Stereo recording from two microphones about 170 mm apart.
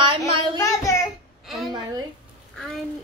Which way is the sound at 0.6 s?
20° left (ahead or behind).